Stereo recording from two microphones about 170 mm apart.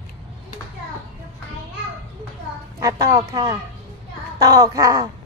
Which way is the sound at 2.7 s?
20° right (ahead or behind).